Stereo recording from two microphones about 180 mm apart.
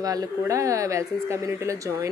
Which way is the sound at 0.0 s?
20° right (ahead or behind).